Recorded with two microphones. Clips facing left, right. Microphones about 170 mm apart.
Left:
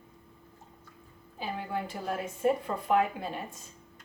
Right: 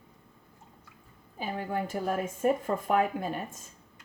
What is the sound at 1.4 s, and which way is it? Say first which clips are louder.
Speech: right 2 dB; 45° right (ahead or behind).